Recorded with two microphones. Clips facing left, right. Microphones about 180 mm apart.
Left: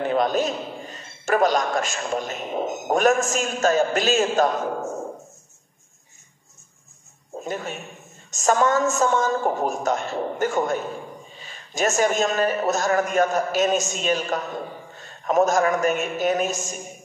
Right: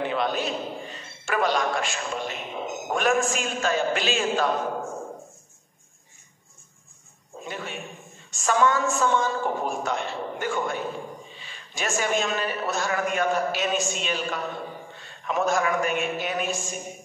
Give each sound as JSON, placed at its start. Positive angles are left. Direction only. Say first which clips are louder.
{"t": 0.0, "sound": "a man's voice", "louder": "left 5 dB", "side_deg": 45}
{"t": 7.3, "sound": "a man's voice", "louder": "left 5 dB", "side_deg": 40}